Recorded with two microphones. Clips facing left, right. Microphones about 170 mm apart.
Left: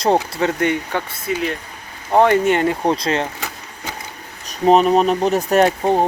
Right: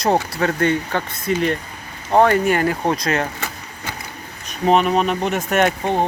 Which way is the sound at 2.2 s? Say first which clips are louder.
Left 2 dB; 20° left (ahead or behind).